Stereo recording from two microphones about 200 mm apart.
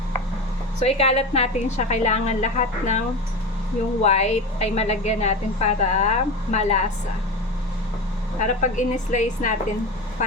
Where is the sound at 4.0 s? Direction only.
35° left (ahead or behind).